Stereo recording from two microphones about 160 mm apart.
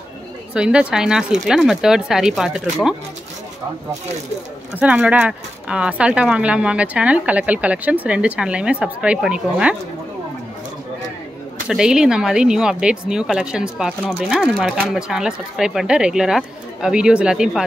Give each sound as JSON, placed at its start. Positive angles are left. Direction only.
{"t": 0.6, "sound": "speech", "side_deg": -5}
{"t": 4.7, "sound": "speech", "side_deg": -10}
{"t": 11.6, "sound": "speech", "side_deg": -5}